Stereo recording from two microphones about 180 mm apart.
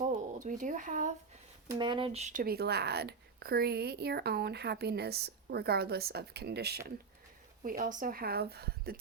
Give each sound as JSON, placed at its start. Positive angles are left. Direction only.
{"t": 0.0, "sound": "a sound", "side_deg": -45}
{"t": 1.8, "sound": "speech", "side_deg": -25}
{"t": 2.4, "sound": "speech", "side_deg": -60}
{"t": 7.6, "sound": "speech", "side_deg": -50}